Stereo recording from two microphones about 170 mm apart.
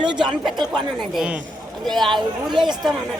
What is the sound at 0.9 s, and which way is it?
Speech, 5° right (ahead or behind).